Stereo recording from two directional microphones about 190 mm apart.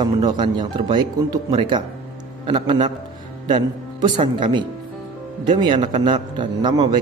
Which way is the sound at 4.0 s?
25° right (ahead or behind).